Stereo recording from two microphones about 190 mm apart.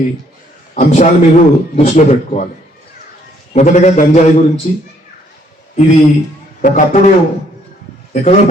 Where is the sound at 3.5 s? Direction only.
40° left (ahead or behind).